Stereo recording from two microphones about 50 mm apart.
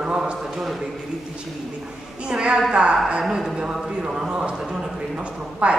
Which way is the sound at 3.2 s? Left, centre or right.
Centre.